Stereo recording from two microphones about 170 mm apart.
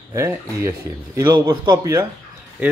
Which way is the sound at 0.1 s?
15° right (ahead or behind).